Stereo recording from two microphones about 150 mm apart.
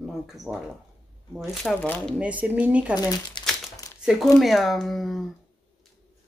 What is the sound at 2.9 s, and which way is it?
Speech, 30° left (ahead or behind).